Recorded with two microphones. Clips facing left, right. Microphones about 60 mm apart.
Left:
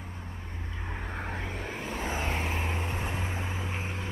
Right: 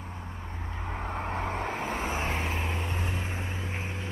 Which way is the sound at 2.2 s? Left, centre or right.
Centre.